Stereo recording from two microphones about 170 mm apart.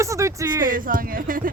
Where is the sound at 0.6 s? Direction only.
55° right (ahead or behind).